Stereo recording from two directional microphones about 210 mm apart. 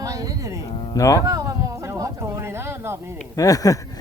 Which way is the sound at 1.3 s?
15° right (ahead or behind).